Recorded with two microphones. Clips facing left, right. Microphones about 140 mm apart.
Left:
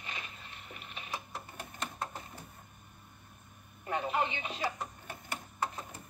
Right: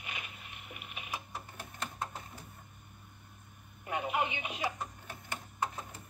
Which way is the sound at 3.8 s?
10° right (ahead or behind).